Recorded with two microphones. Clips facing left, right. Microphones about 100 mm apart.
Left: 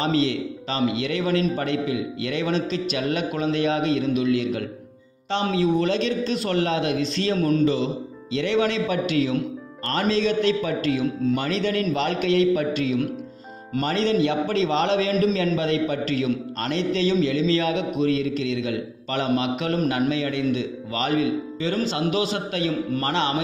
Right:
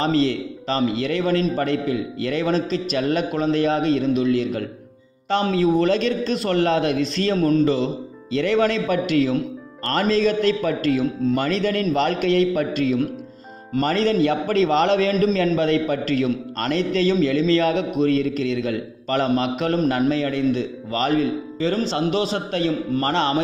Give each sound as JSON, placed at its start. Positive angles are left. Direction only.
{"t": 0.0, "sound": "a man's voice", "side_deg": -40}
{"t": 13.7, "sound": "speech", "side_deg": -45}
{"t": 15.1, "sound": "a man's voice", "side_deg": -35}
{"t": 16.5, "sound": "a man's voice", "side_deg": -50}